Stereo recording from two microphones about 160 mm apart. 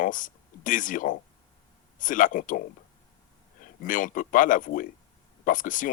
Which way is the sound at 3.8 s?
55° left (ahead or behind).